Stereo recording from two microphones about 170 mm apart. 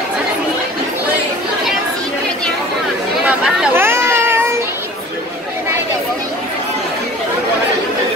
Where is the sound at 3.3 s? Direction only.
5° right (ahead or behind).